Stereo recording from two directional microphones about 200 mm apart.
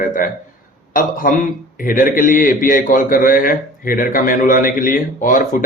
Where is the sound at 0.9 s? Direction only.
45° left (ahead or behind).